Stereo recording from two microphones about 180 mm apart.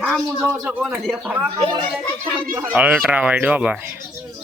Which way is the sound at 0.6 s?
5° right (ahead or behind).